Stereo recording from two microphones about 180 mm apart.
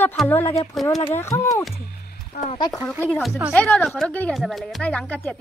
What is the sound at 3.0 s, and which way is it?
A woman's voice, 5° left (ahead or behind).